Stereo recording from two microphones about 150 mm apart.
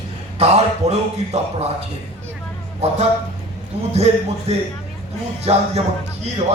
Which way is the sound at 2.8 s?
45° right (ahead or behind).